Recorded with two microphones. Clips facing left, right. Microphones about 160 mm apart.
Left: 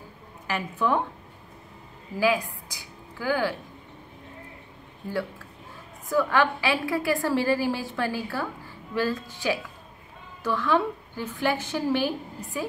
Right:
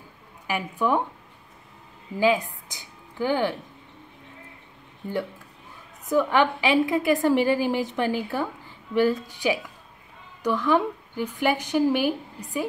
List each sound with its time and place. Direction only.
0.5 s a woman's voice: 15° right (ahead or behind)
2.1 s a woman's voice: 20° right (ahead or behind)
6.0 s a woman's voice: 20° right (ahead or behind)